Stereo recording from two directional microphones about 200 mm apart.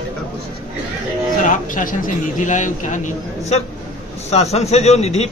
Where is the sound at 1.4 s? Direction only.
40° left (ahead or behind).